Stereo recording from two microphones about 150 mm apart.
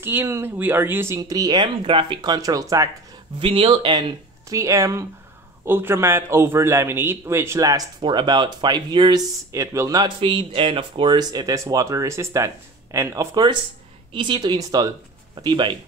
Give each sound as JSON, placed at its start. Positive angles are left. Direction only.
{"t": 0.0, "sound": "speech", "side_deg": -15}
{"t": 3.3, "sound": "speech", "side_deg": -35}
{"t": 4.5, "sound": "a man's voice", "side_deg": -20}